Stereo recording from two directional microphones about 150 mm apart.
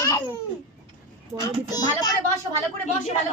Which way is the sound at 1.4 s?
25° left (ahead or behind).